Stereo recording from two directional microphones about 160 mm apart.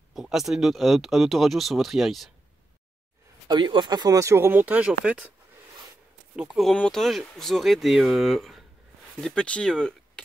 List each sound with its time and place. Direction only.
0.1 s speech: centre (ahead or behind)
3.4 s speech: 30° right (ahead or behind); by 5.2 s 5° right (ahead or behind)
6.3 s speech: centre (ahead or behind)